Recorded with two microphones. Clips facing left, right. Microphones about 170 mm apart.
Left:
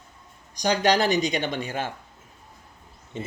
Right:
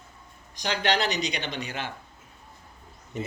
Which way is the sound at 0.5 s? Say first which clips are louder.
Left 5 dB; 40° left (ahead or behind).